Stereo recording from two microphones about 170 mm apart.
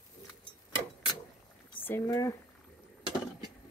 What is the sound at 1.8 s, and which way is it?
Speech, 15° left (ahead or behind).